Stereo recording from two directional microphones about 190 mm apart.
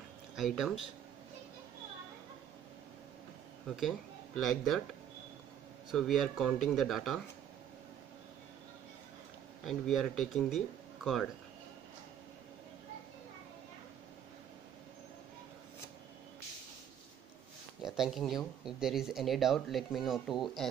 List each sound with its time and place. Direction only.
0.4 s speech: centre (ahead or behind)
4.4 s speech: centre (ahead or behind)
5.9 s speech: centre (ahead or behind)
9.7 s speech: centre (ahead or behind)
17.8 s speech: centre (ahead or behind)